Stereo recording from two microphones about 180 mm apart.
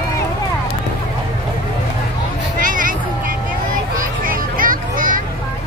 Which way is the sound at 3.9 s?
50° right (ahead or behind).